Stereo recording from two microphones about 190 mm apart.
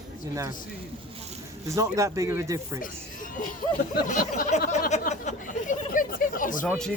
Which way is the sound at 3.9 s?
45° left (ahead or behind).